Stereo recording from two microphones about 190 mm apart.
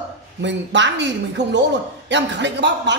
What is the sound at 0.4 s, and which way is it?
A man's voice, 70° right (ahead or behind).